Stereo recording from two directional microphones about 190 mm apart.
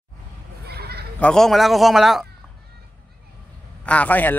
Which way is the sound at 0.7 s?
55° right (ahead or behind).